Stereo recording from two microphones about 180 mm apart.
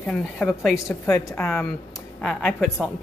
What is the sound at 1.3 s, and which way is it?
A woman's voice, 5° left (ahead or behind).